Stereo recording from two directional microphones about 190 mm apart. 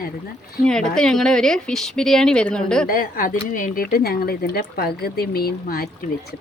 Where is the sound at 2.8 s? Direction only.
50° left (ahead or behind).